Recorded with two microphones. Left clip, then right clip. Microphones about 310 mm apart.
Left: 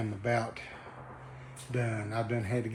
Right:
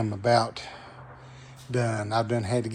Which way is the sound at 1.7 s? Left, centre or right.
Centre.